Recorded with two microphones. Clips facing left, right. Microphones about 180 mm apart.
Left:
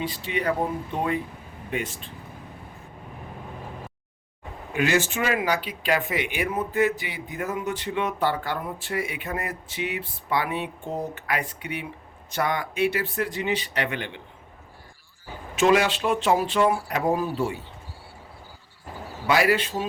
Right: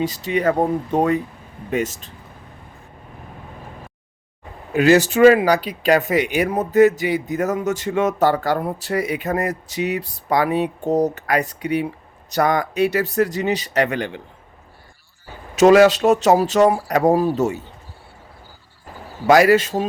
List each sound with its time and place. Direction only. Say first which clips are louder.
0.0 s speech: right 8 dB; 40° right (ahead or behind)
4.7 s speech: right 9 dB; 40° right (ahead or behind)
15.5 s speech: right 9 dB; 40° right (ahead or behind)
19.3 s speech: right 8 dB; 45° right (ahead or behind)